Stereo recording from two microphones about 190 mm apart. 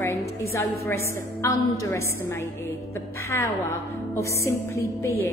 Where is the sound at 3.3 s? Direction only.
15° left (ahead or behind).